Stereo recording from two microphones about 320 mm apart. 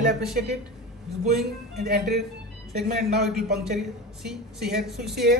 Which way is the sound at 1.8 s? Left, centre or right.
Right.